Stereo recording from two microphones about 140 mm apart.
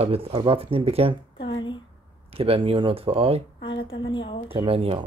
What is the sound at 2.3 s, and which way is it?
Speech, 40° right (ahead or behind).